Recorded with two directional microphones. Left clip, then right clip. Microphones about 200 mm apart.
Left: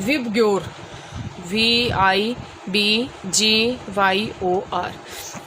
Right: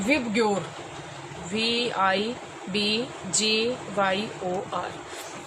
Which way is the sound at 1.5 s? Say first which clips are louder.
Left 7 dB; 55° left (ahead or behind).